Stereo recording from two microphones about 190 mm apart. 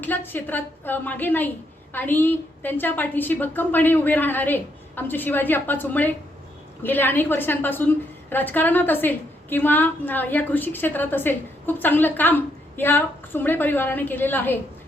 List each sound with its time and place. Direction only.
0.0 s a woman's voice: 10° left (ahead or behind)